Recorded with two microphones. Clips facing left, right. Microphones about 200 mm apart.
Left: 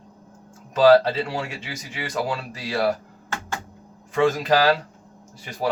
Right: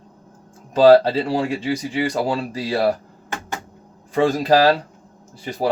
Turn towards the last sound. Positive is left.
turn(degrees=-35)  # may be behind; listen again after turning